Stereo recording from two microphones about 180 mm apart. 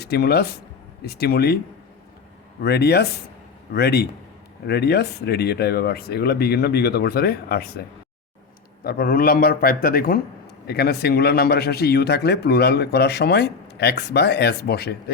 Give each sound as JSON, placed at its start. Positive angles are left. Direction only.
{"t": 0.0, "sound": "a man's voice", "side_deg": 65}
{"t": 2.6, "sound": "a man's voice", "side_deg": 65}
{"t": 8.8, "sound": "a man's voice", "side_deg": 55}